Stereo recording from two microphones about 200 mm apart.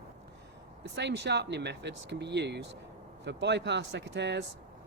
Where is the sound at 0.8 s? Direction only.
60° right (ahead or behind).